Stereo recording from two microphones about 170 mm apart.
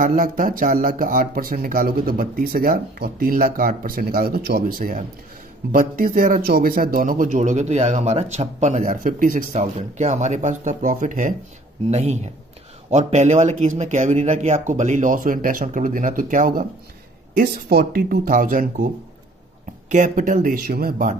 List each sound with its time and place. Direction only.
0.0 s speech: 50° right (ahead or behind)
19.9 s speech: 50° right (ahead or behind)